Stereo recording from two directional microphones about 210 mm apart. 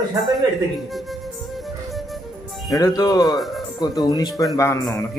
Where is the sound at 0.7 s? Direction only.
Centre (ahead or behind).